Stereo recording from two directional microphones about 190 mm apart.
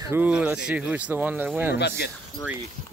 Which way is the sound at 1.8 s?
60° left (ahead or behind).